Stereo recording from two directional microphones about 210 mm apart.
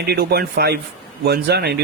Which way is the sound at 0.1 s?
50° right (ahead or behind).